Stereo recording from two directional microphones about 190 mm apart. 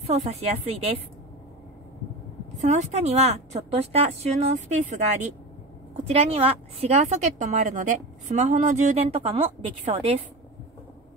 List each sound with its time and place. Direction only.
0.0 s a woman's voice: 35° right (ahead or behind)
2.6 s a woman's voice: 40° right (ahead or behind)
6.1 s a woman's voice: 30° right (ahead or behind)